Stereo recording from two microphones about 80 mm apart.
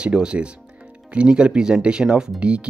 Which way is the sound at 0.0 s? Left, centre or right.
Centre.